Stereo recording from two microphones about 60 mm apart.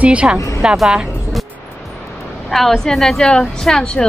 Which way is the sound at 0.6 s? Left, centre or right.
Centre.